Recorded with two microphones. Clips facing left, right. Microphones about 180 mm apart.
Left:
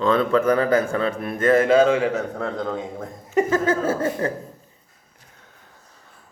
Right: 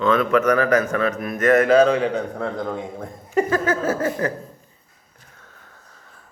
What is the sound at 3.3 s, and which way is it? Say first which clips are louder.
Speech: left 1 dB; 25° left (ahead or behind).